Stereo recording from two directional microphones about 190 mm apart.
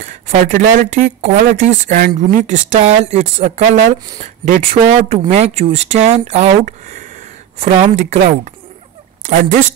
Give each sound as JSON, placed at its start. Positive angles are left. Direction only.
{"t": 0.0, "sound": "speech", "side_deg": -40}